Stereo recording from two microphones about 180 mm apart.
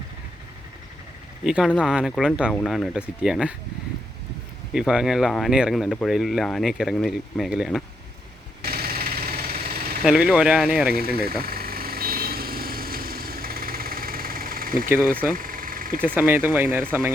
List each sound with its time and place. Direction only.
1.5 s speech: 5° right (ahead or behind)
4.7 s speech: centre (ahead or behind)
8.6 s vehicle: 60° right (ahead or behind)
10.0 s speech: 5° right (ahead or behind)
10.9 s speech: 60° right (ahead or behind)
11.4 s vehicle: 55° right (ahead or behind)
16.0 s speech: 10° right (ahead or behind)